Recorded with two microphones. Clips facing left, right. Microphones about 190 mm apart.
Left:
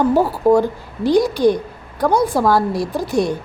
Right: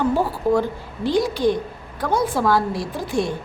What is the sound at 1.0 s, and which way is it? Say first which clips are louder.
A woman's voice: left 5 dB; 40° left (ahead or behind).